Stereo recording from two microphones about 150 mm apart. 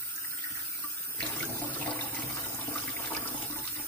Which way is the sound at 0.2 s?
15° left (ahead or behind).